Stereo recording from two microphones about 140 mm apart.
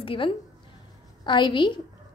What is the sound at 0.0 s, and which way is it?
A woman's voice, 40° left (ahead or behind).